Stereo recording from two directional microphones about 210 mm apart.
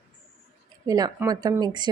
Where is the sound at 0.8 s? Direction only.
15° right (ahead or behind).